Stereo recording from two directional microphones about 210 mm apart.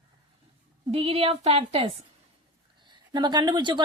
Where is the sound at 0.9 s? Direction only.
25° right (ahead or behind).